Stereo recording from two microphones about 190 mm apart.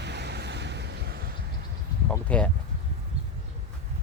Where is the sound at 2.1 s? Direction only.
5° left (ahead or behind).